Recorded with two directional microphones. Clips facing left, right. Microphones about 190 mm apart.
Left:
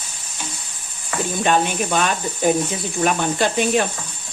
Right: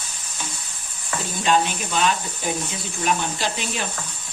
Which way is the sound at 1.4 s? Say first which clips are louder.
Left 1 dB; 55° left (ahead or behind).